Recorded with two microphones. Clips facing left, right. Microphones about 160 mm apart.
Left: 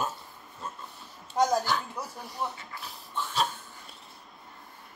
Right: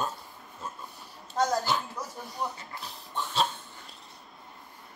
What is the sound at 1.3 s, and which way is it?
Speech, 15° left (ahead or behind).